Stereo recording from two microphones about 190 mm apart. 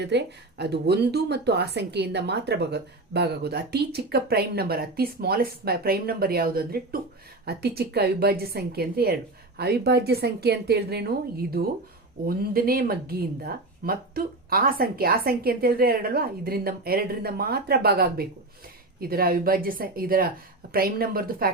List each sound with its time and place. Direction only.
0.0 s speech: 60° right (ahead or behind)